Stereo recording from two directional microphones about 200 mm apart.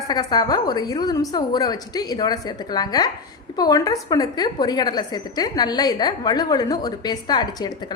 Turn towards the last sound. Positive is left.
turn(degrees=20)  # may be behind; listen again after turning